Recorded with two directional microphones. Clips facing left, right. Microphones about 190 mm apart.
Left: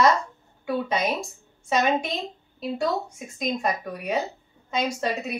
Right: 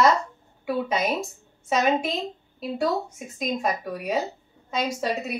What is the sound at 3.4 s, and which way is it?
A woman's voice, centre (ahead or behind).